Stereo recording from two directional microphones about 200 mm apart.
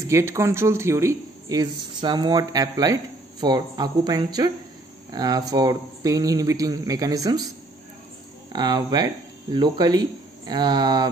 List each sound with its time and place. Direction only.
0.0 s speech: 15° right (ahead or behind)
8.5 s speech: 20° right (ahead or behind)